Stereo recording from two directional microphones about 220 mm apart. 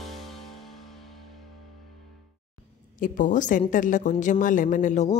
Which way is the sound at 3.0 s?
35° left (ahead or behind).